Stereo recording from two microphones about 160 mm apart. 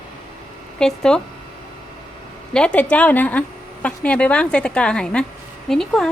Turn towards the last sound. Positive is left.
turn(degrees=5)  # may be behind; listen again after turning